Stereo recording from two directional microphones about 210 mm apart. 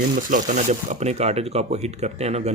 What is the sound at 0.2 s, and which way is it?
Speech, 40° right (ahead or behind).